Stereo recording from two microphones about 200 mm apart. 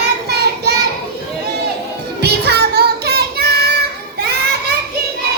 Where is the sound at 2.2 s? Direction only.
55° right (ahead or behind).